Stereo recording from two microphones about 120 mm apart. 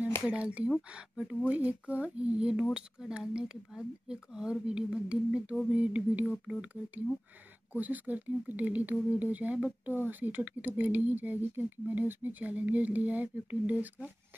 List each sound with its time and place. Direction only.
0.2 s speech: 10° right (ahead or behind)